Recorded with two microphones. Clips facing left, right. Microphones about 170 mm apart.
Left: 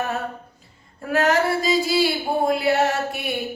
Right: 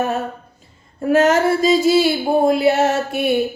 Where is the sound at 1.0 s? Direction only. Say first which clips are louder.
Right 6 dB; 25° right (ahead or behind).